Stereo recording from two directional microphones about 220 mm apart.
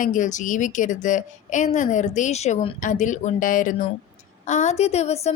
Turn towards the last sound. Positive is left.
turn(degrees=30)  # may be behind; listen again after turning